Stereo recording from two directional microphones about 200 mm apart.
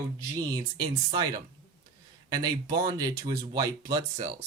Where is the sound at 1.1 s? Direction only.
20° right (ahead or behind).